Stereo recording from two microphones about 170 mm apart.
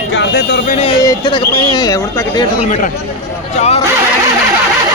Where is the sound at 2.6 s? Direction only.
45° left (ahead or behind).